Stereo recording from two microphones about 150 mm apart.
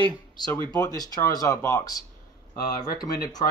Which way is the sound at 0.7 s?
25° left (ahead or behind).